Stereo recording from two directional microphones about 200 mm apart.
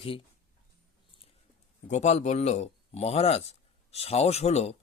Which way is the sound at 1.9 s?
35° left (ahead or behind).